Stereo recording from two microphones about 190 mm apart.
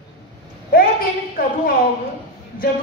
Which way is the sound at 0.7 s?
50° left (ahead or behind).